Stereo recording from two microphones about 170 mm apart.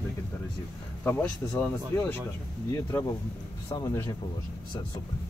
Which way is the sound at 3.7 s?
25° left (ahead or behind).